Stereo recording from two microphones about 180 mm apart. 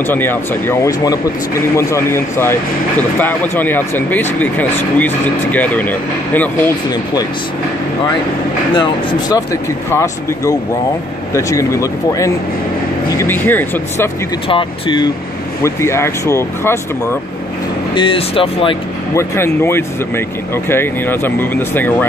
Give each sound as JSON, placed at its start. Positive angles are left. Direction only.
{"t": 0.0, "sound": "speech", "side_deg": 10}
{"t": 9.3, "sound": "speech", "side_deg": 15}
{"t": 14.5, "sound": "speech", "side_deg": 25}
{"t": 15.6, "sound": "speech", "side_deg": 15}
{"t": 17.9, "sound": "speech", "side_deg": 30}
{"t": 19.1, "sound": "speech", "side_deg": 15}